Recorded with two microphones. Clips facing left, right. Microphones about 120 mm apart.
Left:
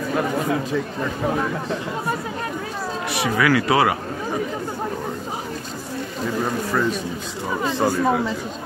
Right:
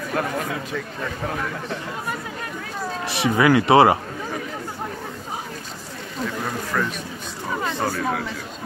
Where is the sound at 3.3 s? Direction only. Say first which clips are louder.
Right 4 dB; 25° right (ahead or behind).